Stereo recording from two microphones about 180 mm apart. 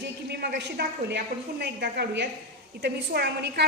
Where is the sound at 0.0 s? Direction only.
70° right (ahead or behind).